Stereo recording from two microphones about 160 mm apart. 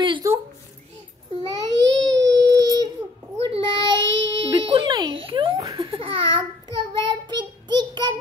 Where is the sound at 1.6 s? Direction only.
25° right (ahead or behind).